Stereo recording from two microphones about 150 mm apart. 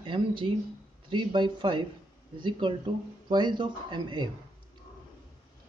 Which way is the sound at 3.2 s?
30° right (ahead or behind).